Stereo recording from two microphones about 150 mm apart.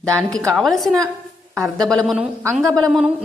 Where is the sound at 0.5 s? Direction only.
Centre (ahead or behind).